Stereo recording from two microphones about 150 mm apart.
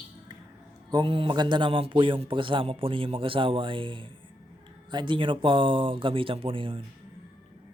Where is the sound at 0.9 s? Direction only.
35° right (ahead or behind).